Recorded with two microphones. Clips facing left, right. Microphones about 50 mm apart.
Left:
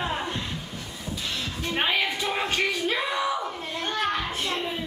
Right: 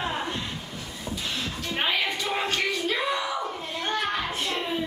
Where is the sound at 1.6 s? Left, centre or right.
Centre.